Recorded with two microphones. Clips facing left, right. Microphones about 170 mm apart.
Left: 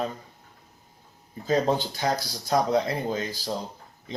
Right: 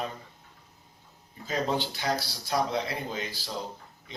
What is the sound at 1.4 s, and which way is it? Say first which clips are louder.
Speech: left 6 dB; 40° left (ahead or behind).